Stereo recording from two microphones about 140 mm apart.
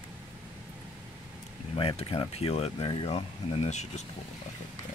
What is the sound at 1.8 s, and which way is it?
Speech, 45° left (ahead or behind).